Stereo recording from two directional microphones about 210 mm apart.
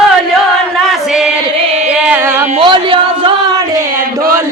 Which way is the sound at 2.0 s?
5° right (ahead or behind).